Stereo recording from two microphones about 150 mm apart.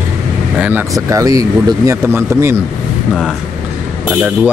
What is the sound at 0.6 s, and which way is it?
Speech, 15° right (ahead or behind).